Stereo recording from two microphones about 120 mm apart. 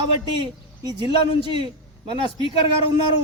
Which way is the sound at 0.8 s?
30° right (ahead or behind).